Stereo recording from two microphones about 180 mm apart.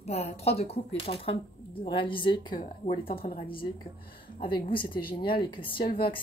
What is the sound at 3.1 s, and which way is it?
Speech, 55° left (ahead or behind).